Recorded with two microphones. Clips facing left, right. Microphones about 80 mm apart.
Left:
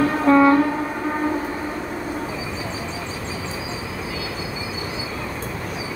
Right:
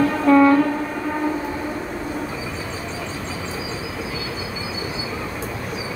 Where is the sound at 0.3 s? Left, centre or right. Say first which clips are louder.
Right 1 dB; left.